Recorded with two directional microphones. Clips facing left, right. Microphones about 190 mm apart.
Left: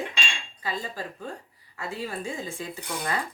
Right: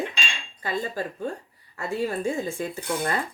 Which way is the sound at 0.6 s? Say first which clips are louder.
Right 5 dB; 50° right (ahead or behind).